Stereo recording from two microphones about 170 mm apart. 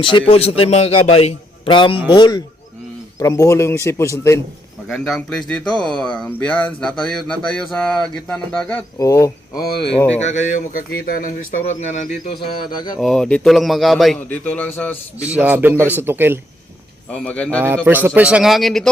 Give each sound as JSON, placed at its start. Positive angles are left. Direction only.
{"t": 0.0, "sound": "a man's voice", "side_deg": 30}
{"t": 4.9, "sound": "speech", "side_deg": 5}
{"t": 9.0, "sound": "speech", "side_deg": 20}
{"t": 10.2, "sound": "speech", "side_deg": 45}
{"t": 11.6, "sound": "speech", "side_deg": 45}
{"t": 12.6, "sound": "speech", "side_deg": 25}
{"t": 13.0, "sound": "speech", "side_deg": 0}
{"t": 15.3, "sound": "a man's voice", "side_deg": -10}
{"t": 17.1, "sound": "a man's voice", "side_deg": 5}
{"t": 17.8, "sound": "speech", "side_deg": -10}